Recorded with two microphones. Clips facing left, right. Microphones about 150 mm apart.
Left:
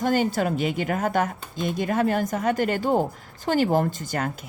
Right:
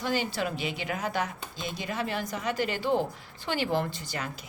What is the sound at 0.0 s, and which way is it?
A woman's voice, 50° left (ahead or behind).